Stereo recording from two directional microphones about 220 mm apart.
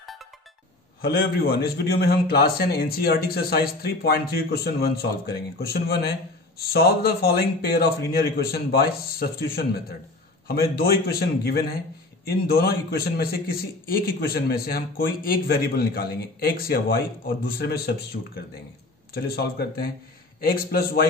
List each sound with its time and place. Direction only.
1.0 s a man's voice: 45° left (ahead or behind)